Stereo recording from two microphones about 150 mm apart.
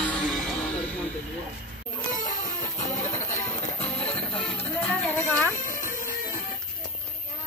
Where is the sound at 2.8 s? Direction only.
50° left (ahead or behind).